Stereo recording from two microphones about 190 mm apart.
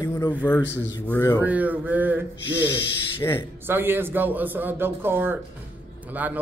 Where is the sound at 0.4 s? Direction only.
10° left (ahead or behind).